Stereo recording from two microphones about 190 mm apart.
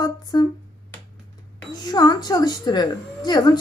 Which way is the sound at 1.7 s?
20° left (ahead or behind).